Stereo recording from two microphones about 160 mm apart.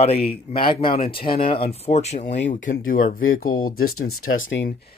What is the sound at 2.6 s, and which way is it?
Speech, 55° left (ahead or behind).